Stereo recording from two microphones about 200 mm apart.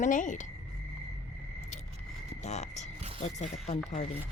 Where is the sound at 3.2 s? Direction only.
35° left (ahead or behind).